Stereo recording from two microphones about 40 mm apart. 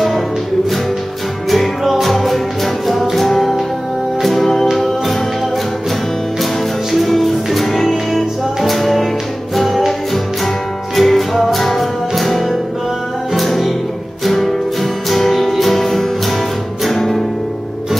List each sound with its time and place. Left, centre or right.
1.5 s music: centre
6.9 s music: centre